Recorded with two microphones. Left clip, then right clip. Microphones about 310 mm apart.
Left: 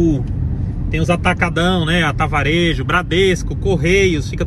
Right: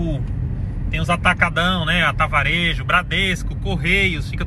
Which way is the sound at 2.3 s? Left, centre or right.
Centre.